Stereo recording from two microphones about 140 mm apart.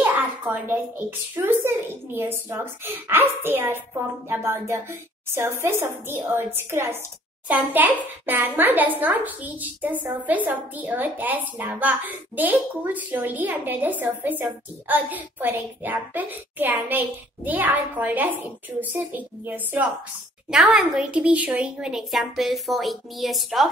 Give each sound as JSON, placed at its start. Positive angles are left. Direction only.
{"t": 0.0, "sound": "a child's voice", "side_deg": -15}